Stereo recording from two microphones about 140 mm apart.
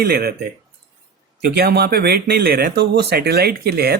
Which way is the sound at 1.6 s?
90° right.